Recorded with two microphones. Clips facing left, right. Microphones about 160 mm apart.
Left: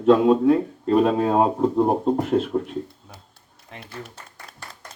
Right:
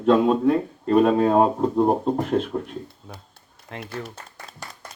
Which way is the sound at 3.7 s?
90° right.